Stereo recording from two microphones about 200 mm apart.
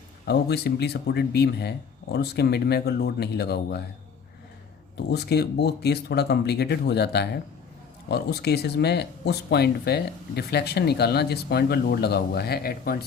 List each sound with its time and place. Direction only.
0.3 s speech: 55° left (ahead or behind)
5.1 s speech: 55° left (ahead or behind)